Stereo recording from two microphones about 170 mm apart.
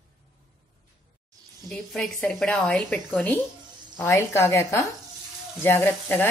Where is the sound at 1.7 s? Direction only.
Centre (ahead or behind).